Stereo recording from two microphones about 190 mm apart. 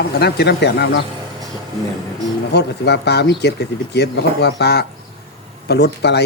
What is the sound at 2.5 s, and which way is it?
Speech, 60° left (ahead or behind).